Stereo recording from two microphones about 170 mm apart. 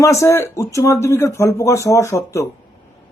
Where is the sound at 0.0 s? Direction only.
15° left (ahead or behind).